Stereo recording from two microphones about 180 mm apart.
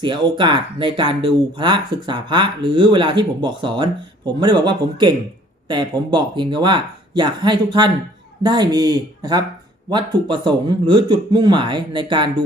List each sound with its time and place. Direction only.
0.0 s speech: 25° right (ahead or behind)